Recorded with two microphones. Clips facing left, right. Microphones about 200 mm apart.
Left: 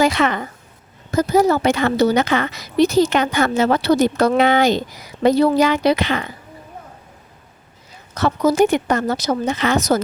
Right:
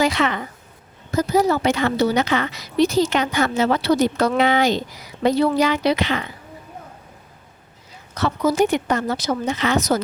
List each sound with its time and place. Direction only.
0.0 s a woman's voice: 50° left (ahead or behind)
8.1 s a woman's voice: 45° left (ahead or behind)